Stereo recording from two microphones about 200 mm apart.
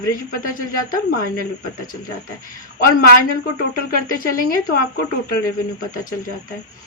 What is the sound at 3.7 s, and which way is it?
A woman's voice, 45° left (ahead or behind).